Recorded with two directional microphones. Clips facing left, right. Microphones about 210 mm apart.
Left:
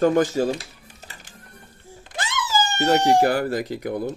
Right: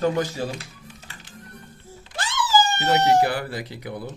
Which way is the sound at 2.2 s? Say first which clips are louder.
Right 1 dB; 20° left (ahead or behind).